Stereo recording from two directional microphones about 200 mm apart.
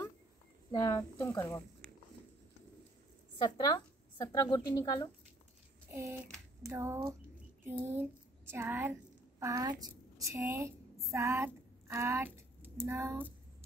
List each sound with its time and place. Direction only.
0.7 s speech: 15° left (ahead or behind)
3.4 s a woman's voice: 20° left (ahead or behind)
5.9 s typing: 10° right (ahead or behind)
6.6 s speech: 15° right (ahead or behind)
7.6 s a sound: 10° right (ahead or behind)
9.4 s a woman's voice: 15° right (ahead or behind)